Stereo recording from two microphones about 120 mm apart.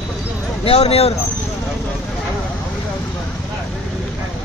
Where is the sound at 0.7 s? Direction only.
55° left (ahead or behind).